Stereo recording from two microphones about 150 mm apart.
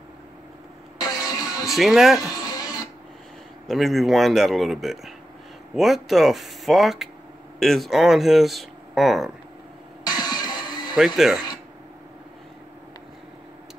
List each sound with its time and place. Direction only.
0.9 s music: 25° left (ahead or behind)
1.7 s speech: centre (ahead or behind)
2.2 s music: 25° left (ahead or behind)
3.6 s speech: centre (ahead or behind)
10.0 s music: 25° left (ahead or behind)
11.1 s speech: 5° right (ahead or behind)